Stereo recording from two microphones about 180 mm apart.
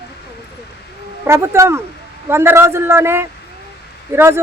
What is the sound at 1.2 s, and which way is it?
Speech, 15° right (ahead or behind).